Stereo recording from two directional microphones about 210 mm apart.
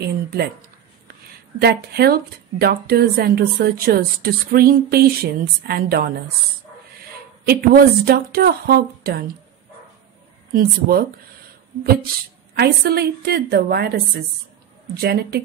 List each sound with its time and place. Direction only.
0.0 s speech: 50° right (ahead or behind)
1.6 s speech: 50° right (ahead or behind)
7.4 s speech: 45° right (ahead or behind)
10.5 s speech: 45° right (ahead or behind)
12.5 s speech: 50° right (ahead or behind)